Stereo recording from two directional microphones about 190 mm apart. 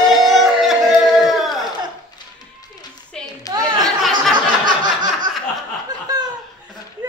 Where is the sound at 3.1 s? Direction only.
5° left (ahead or behind).